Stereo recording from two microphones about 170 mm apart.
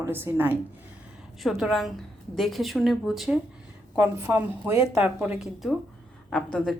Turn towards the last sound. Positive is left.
turn(degrees=5)  # may be behind; listen again after turning